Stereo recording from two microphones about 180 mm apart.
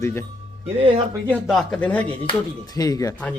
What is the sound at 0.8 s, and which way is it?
Speech, 30° right (ahead or behind).